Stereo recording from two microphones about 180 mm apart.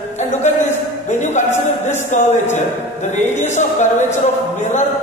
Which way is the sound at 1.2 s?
40° left (ahead or behind).